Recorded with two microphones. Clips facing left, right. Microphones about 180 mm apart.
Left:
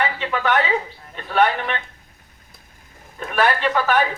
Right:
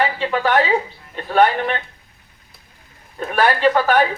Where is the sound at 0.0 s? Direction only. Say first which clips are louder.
Right 3 dB; 35° right (ahead or behind).